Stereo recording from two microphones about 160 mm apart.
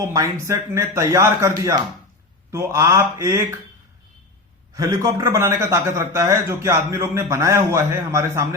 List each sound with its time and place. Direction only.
0.0 s a man's voice: 20° right (ahead or behind)
4.7 s a man's voice: 20° right (ahead or behind)